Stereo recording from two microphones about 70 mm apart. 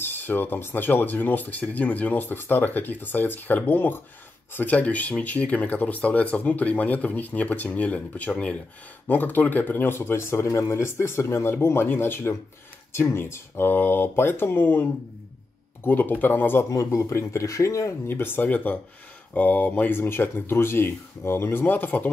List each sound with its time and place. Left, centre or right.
0.0 s speech: left
16.7 s speech: left
18.0 s speech: left